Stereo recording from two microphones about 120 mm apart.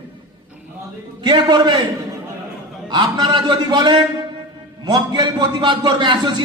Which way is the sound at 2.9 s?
40° right (ahead or behind).